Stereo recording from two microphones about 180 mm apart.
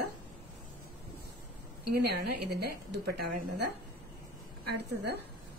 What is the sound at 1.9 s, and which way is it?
A woman's voice, 65° right (ahead or behind).